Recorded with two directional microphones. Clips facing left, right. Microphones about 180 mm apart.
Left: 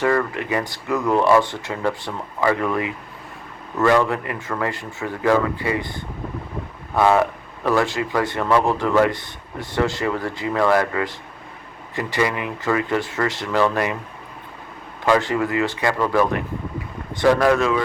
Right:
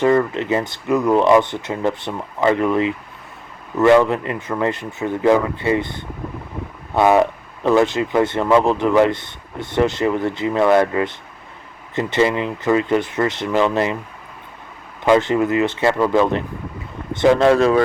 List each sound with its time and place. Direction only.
0.0 s speech: 20° right (ahead or behind)
15.0 s speech: 20° right (ahead or behind)